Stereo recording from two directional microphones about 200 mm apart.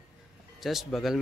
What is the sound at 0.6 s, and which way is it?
Speech, centre (ahead or behind).